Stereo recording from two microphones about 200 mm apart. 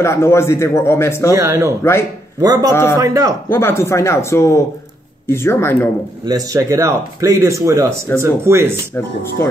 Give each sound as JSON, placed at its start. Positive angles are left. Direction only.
{"t": 0.0, "sound": "a man's voice", "side_deg": 15}
{"t": 1.3, "sound": "speech", "side_deg": -15}
{"t": 1.8, "sound": "a man's voice", "side_deg": 15}
{"t": 2.4, "sound": "speech", "side_deg": -20}
{"t": 2.7, "sound": "a man's voice", "side_deg": 15}
{"t": 3.0, "sound": "speech", "side_deg": -15}
{"t": 3.4, "sound": "a man's voice", "side_deg": 10}
{"t": 6.2, "sound": "speech", "side_deg": -15}